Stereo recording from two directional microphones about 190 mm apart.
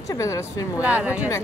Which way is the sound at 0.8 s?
5° right (ahead or behind).